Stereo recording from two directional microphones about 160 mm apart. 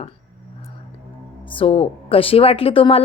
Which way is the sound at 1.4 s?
35° left (ahead or behind).